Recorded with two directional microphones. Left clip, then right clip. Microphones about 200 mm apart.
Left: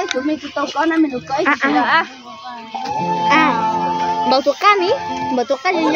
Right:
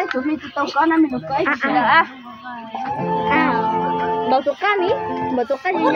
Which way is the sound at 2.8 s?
50° left (ahead or behind).